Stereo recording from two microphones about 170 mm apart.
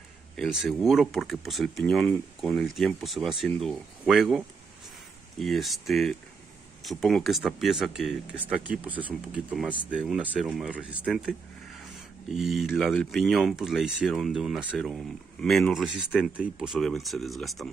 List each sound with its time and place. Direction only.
0.4 s speech: centre (ahead or behind)